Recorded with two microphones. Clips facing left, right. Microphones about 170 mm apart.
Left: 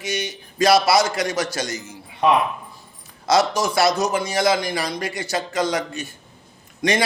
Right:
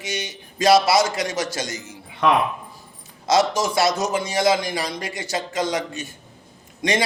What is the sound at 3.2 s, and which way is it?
A man's voice, 20° right (ahead or behind).